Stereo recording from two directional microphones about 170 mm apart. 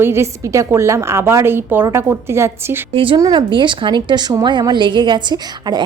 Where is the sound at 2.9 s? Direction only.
30° right (ahead or behind).